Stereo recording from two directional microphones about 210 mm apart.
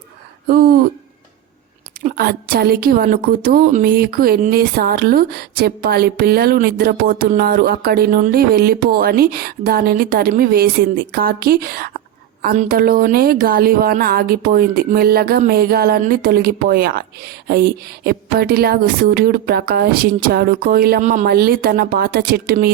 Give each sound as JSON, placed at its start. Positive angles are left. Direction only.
{"t": 0.4, "sound": "a woman's voice", "side_deg": -45}
{"t": 2.0, "sound": "a woman's voice", "side_deg": -45}